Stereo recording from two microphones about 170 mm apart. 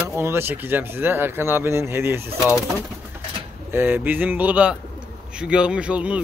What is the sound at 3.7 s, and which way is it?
Speech, 10° right (ahead or behind).